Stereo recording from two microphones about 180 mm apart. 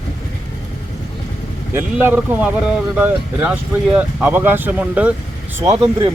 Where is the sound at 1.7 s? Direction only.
10° right (ahead or behind).